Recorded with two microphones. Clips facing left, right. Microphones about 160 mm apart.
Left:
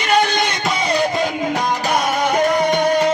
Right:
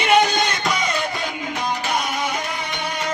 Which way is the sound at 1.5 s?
45° left (ahead or behind).